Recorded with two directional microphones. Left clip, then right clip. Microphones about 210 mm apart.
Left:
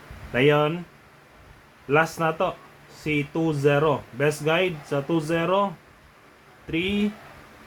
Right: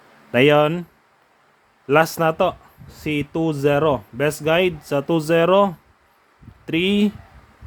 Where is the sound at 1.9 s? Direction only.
50° right (ahead or behind).